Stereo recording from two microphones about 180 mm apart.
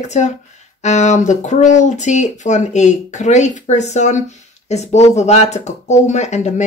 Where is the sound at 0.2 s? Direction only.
40° left (ahead or behind).